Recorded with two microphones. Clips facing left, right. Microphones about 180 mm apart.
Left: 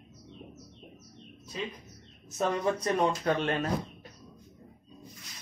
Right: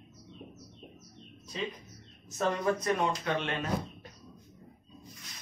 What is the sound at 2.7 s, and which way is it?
Speech, 40° left (ahead or behind).